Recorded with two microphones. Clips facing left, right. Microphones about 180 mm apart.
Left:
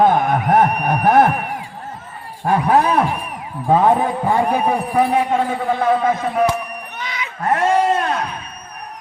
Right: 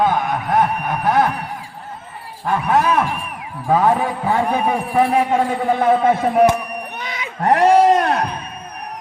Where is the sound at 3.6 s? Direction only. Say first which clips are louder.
Left 2 dB; 20° left (ahead or behind).